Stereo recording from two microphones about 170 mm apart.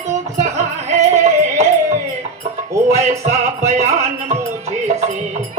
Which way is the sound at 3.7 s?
40° right (ahead or behind).